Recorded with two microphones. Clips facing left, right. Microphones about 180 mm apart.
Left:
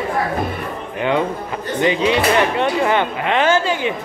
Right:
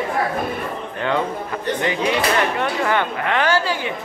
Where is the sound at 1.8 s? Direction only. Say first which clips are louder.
Left 6 dB; 20° left (ahead or behind).